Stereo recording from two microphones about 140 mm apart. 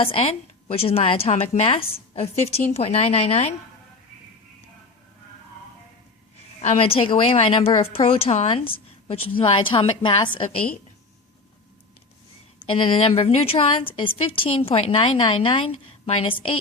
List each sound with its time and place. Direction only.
0.0 s a woman's voice: 40° left (ahead or behind)
6.6 s a woman's voice: 45° left (ahead or behind)
12.7 s a woman's voice: 35° left (ahead or behind)